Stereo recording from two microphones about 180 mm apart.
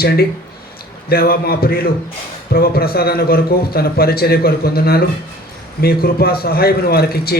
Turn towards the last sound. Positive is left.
turn(degrees=60)  # may be behind; listen again after turning